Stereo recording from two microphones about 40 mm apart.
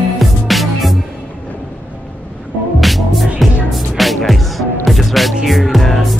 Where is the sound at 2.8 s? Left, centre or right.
Centre.